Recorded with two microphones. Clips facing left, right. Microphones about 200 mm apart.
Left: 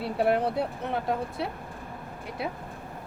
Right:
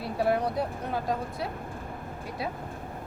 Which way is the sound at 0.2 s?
25° left (ahead or behind).